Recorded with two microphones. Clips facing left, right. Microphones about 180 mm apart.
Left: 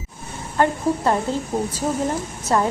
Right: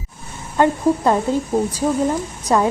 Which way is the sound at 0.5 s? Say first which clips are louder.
Right 4 dB; 15° right (ahead or behind).